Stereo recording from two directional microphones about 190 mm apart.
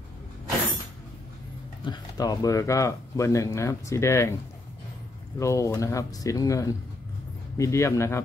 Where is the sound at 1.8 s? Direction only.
20° left (ahead or behind).